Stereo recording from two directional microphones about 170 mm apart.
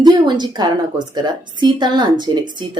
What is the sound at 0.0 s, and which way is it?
A woman's voice, 25° right (ahead or behind).